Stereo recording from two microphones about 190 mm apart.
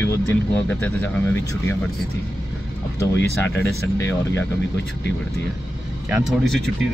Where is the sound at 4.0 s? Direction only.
15° left (ahead or behind).